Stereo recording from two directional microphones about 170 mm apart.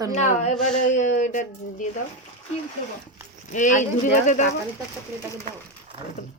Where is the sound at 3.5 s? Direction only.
45° left (ahead or behind).